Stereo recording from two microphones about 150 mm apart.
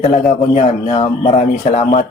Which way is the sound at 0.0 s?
45° left (ahead or behind).